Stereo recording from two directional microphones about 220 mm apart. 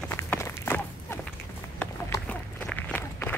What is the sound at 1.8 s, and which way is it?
Walk, 10° left (ahead or behind).